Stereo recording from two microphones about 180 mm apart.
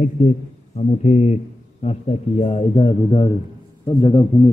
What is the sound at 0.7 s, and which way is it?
A man's voice, 40° left (ahead or behind).